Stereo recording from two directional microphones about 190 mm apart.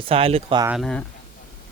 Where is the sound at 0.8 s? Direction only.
5° left (ahead or behind).